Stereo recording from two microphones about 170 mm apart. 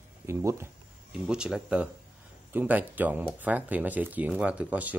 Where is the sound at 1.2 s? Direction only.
5° right (ahead or behind).